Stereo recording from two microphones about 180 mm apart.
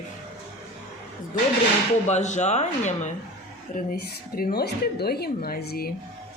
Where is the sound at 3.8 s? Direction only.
55° left (ahead or behind).